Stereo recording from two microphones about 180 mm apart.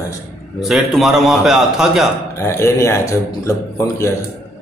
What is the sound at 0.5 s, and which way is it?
A man's voice, centre (ahead or behind).